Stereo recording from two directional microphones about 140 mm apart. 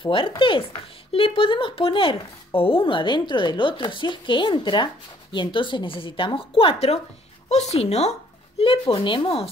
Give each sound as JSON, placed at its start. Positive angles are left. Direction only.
{"t": 0.0, "sound": "speech", "side_deg": 35}